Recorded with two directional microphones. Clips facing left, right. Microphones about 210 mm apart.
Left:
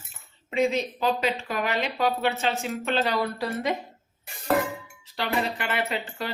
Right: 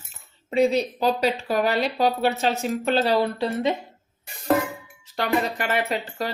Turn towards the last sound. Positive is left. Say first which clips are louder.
# right 3 dB
turn(degrees=-40)  # may be behind; listen again after turning